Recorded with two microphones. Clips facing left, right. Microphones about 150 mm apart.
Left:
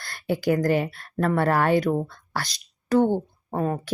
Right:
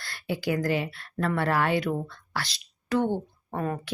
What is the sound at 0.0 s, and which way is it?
A woman's voice, 45° left (ahead or behind).